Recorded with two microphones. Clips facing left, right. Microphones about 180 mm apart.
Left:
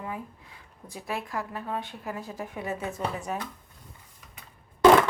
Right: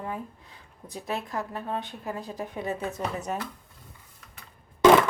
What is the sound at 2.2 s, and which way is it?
Speech, 15° right (ahead or behind).